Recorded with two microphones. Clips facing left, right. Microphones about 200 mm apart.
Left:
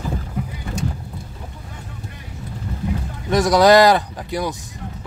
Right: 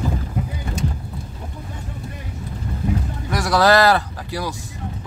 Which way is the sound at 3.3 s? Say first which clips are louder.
Left 4 dB; 20° left (ahead or behind).